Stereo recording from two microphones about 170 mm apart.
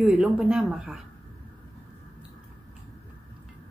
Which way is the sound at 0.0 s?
10° right (ahead or behind).